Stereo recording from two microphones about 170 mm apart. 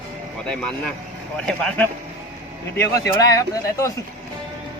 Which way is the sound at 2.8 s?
20° left (ahead or behind).